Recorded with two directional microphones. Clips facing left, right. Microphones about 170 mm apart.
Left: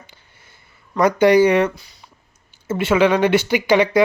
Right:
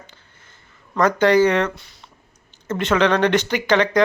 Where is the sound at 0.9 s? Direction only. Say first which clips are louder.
Left 2 dB; 10° left (ahead or behind).